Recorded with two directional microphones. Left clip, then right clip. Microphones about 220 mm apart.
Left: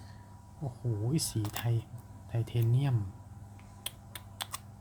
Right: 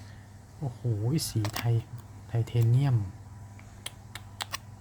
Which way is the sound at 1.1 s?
10° right (ahead or behind).